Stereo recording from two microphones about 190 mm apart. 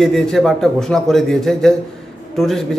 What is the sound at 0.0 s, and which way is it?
A man's voice, centre (ahead or behind).